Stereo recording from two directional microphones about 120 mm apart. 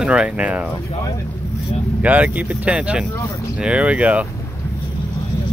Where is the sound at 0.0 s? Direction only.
10° right (ahead or behind).